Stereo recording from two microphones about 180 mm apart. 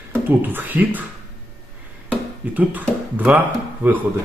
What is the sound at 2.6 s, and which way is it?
Speech, 10° right (ahead or behind).